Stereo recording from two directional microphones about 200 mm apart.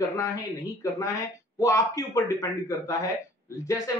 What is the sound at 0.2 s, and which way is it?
A man's voice, 15° left (ahead or behind).